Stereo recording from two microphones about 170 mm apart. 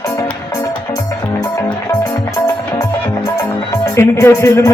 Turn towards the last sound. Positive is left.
turn(degrees=15)  # may be behind; listen again after turning